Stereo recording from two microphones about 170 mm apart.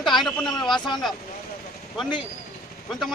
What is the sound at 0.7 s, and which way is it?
Speech, 25° left (ahead or behind).